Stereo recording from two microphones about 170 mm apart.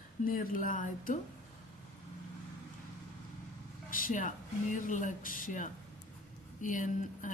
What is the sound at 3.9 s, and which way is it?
Speech, 55° left (ahead or behind).